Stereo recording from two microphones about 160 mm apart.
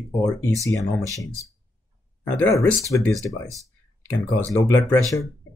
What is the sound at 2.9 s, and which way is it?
Speech, 20° left (ahead or behind).